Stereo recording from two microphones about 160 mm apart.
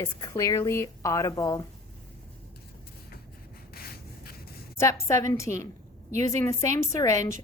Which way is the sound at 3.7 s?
70° left (ahead or behind).